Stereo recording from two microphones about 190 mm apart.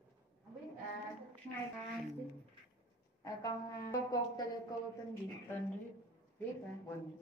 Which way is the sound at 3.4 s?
20° left (ahead or behind).